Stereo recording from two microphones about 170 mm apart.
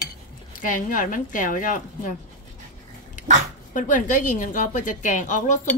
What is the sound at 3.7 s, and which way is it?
A woman's voice, 50° left (ahead or behind).